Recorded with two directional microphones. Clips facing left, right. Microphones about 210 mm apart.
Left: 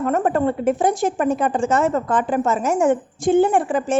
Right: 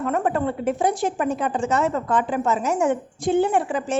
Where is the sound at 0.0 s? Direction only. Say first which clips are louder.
Left 4 dB; 45° left (ahead or behind).